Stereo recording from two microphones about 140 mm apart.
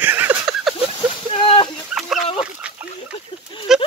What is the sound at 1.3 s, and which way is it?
Fowl, 40° left (ahead or behind).